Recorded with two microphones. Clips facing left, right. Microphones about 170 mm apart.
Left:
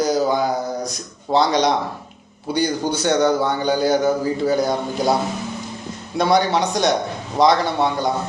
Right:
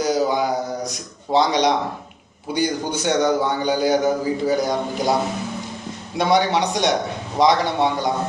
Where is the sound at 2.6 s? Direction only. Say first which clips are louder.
Left 1 dB; 35° left (ahead or behind).